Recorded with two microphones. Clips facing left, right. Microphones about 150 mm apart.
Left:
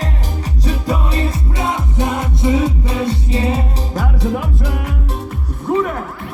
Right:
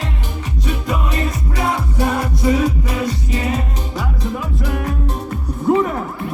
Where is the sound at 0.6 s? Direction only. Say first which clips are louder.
Left 2 dB; 35° left (ahead or behind).